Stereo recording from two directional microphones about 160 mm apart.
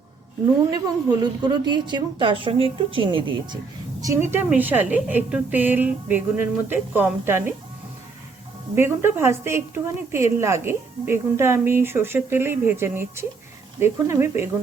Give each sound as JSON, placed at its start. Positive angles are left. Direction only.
{"t": 1.2, "sound": "a woman's voice", "side_deg": -25}
{"t": 4.0, "sound": "a woman's voice", "side_deg": -15}
{"t": 8.7, "sound": "a woman's voice", "side_deg": -15}